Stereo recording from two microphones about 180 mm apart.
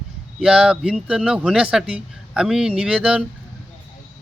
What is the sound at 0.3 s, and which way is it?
Speech, 5° right (ahead or behind).